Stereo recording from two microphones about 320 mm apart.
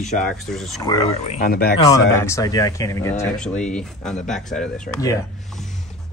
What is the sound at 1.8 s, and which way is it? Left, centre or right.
Speech, centre.